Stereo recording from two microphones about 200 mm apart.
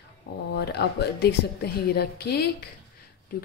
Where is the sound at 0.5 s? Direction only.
55° left (ahead or behind).